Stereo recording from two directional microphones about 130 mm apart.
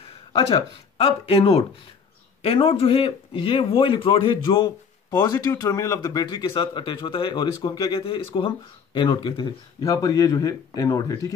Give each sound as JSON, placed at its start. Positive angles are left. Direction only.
{"t": 0.3, "sound": "speech", "side_deg": 45}
{"t": 5.6, "sound": "speech", "side_deg": 25}
{"t": 9.9, "sound": "speech", "side_deg": 25}